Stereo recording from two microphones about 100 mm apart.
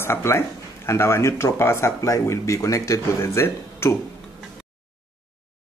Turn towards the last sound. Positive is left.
turn(degrees=25)  # may be behind; listen again after turning